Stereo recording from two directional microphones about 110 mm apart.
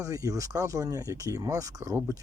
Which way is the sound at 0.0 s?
30° right (ahead or behind).